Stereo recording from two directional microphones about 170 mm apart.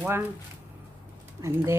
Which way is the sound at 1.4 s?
15° right (ahead or behind).